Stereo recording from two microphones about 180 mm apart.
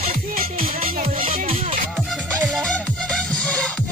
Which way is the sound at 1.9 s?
5° left (ahead or behind).